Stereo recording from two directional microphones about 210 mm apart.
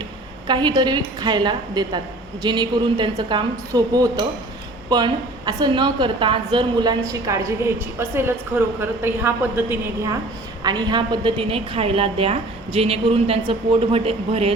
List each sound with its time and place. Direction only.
0.4 s a woman's voice: 20° right (ahead or behind)